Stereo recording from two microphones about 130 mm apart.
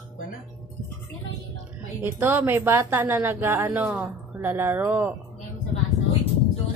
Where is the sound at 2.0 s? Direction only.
20° right (ahead or behind).